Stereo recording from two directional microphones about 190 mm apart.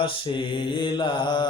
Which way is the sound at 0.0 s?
25° left (ahead or behind).